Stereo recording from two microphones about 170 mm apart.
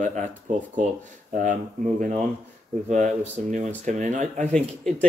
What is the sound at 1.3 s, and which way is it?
Speech, 50° right (ahead or behind).